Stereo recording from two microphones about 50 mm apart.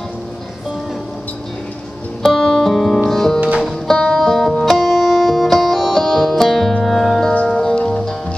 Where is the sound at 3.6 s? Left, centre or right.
Centre.